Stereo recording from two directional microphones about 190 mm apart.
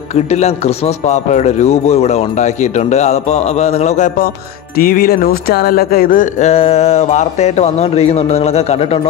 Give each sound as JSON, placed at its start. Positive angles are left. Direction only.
{"t": 0.1, "sound": "a man's voice", "side_deg": 35}
{"t": 4.7, "sound": "speech", "side_deg": 50}
{"t": 6.5, "sound": "a man's voice", "side_deg": 30}